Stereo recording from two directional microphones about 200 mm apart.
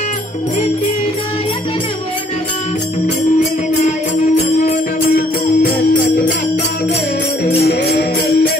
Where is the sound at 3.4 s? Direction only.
35° left (ahead or behind).